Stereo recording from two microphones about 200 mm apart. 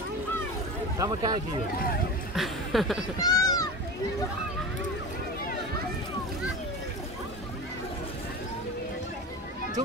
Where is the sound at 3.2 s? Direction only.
20° left (ahead or behind).